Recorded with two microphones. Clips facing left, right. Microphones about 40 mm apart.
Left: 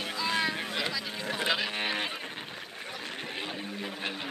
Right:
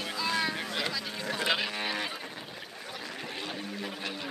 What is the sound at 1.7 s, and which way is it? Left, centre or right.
Vehicle, left.